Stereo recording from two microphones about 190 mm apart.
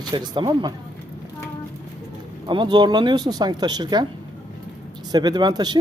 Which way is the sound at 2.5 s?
25° right (ahead or behind).